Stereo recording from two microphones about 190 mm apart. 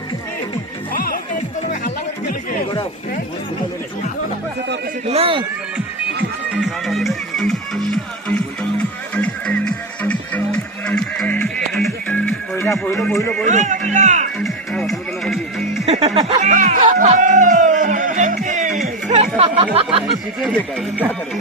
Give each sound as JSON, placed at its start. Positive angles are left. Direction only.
{"t": 0.9, "sound": "music", "side_deg": 50}
{"t": 5.0, "sound": "a man's voice", "side_deg": -30}
{"t": 6.6, "sound": "music", "side_deg": 0}
{"t": 13.1, "sound": "speech", "side_deg": 15}
{"t": 13.4, "sound": "a man's voice", "side_deg": -40}
{"t": 14.3, "sound": "music", "side_deg": 0}
{"t": 16.0, "sound": "a sound", "side_deg": -25}
{"t": 16.4, "sound": "a sound", "side_deg": -40}
{"t": 19.0, "sound": "chatter", "side_deg": -40}
{"t": 19.4, "sound": "a sound", "side_deg": -30}